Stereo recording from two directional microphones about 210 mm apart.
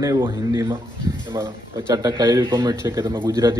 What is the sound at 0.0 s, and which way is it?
Speech, 15° right (ahead or behind).